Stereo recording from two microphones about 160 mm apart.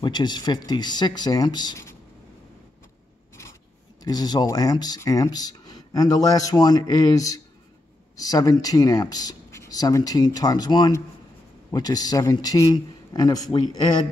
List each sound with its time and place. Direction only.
0.0 s speech: 25° left (ahead or behind)
4.0 s speech: 25° left (ahead or behind)